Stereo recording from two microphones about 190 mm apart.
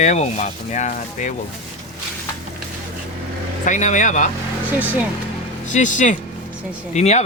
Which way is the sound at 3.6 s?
40° left (ahead or behind).